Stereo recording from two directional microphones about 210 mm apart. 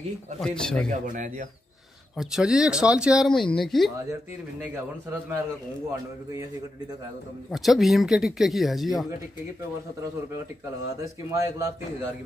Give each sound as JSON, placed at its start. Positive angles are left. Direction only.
{"t": 0.4, "sound": "speech", "side_deg": 5}
{"t": 0.8, "sound": "speech", "side_deg": -40}
{"t": 2.1, "sound": "speech", "side_deg": 0}
{"t": 7.5, "sound": "speech", "side_deg": 0}
{"t": 11.2, "sound": "a man's voice", "side_deg": -15}